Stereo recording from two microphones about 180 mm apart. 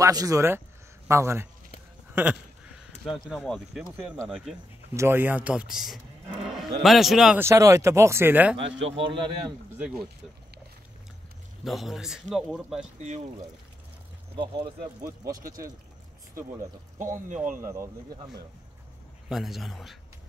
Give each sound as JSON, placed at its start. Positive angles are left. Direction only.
{"t": 0.0, "sound": "speech", "side_deg": -20}
{"t": 3.3, "sound": "a man's voice", "side_deg": 0}
{"t": 7.4, "sound": "speech", "side_deg": -15}
{"t": 8.5, "sound": "a man's voice", "side_deg": -90}
{"t": 8.9, "sound": "a man's voice", "side_deg": -30}
{"t": 9.8, "sound": "speech", "side_deg": -5}
{"t": 11.6, "sound": "a man's voice", "side_deg": 0}
{"t": 14.3, "sound": "speech", "side_deg": -30}
{"t": 15.4, "sound": "speech", "side_deg": -50}
{"t": 17.0, "sound": "speech", "side_deg": -45}
{"t": 17.6, "sound": "speech", "side_deg": -15}
{"t": 19.2, "sound": "a man's voice", "side_deg": 0}